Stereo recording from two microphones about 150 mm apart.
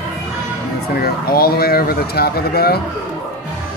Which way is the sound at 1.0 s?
90° left.